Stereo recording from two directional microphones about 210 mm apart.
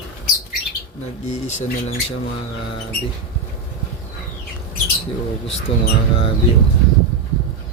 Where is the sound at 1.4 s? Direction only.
35° left (ahead or behind).